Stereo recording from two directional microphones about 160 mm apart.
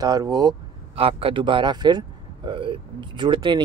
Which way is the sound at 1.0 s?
35° right (ahead or behind).